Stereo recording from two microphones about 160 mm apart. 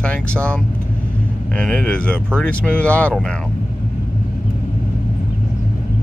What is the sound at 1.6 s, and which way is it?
Speech, 5° left (ahead or behind).